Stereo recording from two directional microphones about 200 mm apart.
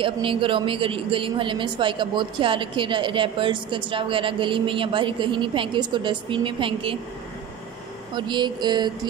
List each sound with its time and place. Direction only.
0.0 s a woman's voice: 25° right (ahead or behind)
8.1 s a woman's voice: 20° right (ahead or behind)